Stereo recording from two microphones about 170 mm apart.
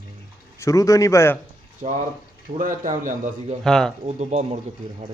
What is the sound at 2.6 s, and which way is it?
Speech, 50° right (ahead or behind).